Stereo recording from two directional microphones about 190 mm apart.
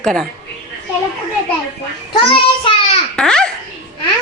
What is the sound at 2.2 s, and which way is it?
Child singing, 30° left (ahead or behind).